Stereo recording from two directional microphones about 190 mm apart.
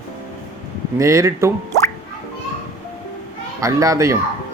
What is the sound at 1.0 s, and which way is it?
Speech, 15° right (ahead or behind).